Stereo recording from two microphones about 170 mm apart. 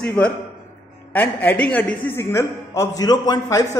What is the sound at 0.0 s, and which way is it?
A man's voice, 5° left (ahead or behind).